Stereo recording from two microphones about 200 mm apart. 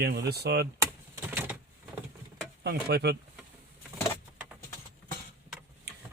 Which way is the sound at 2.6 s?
55° right (ahead or behind).